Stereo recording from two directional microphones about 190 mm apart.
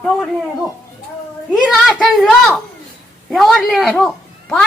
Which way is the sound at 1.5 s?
Centre (ahead or behind).